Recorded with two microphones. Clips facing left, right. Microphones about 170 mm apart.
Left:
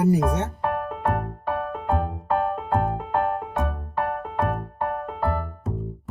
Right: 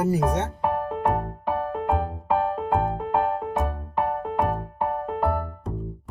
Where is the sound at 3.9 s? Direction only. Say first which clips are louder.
Right 2 dB; 20° right (ahead or behind).